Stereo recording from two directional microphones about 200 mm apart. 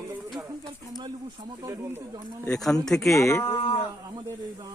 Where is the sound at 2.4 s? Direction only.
5° left (ahead or behind).